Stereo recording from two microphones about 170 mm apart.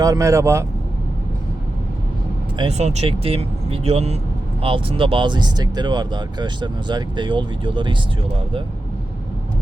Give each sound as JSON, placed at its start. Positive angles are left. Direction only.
{"t": 0.0, "sound": "speech", "side_deg": -20}
{"t": 2.6, "sound": "speech", "side_deg": -40}